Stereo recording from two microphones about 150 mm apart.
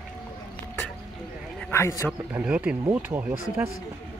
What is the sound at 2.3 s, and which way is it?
Speech, 10° right (ahead or behind).